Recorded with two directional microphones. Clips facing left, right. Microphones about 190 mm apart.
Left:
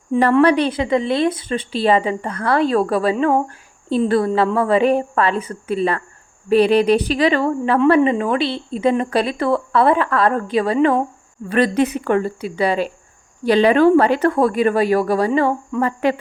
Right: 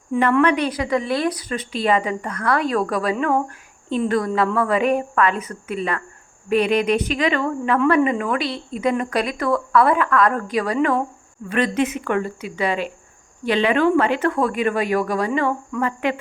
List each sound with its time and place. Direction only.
0.1 s speech: 30° left (ahead or behind)
11.4 s speech: 35° left (ahead or behind)